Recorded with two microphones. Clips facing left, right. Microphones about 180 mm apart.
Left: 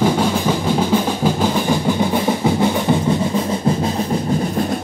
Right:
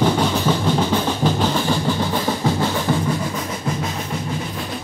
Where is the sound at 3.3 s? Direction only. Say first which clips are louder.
Left 7 dB; 30° left (ahead or behind).